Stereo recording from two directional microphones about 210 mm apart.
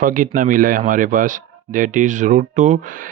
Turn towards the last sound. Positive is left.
turn(degrees=-40)  # may be behind; listen again after turning